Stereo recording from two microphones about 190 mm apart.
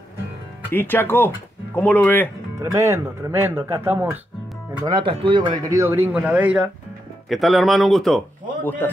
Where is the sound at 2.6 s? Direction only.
15° right (ahead or behind).